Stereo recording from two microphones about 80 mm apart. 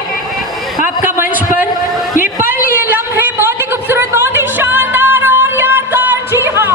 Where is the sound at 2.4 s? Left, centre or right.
Right.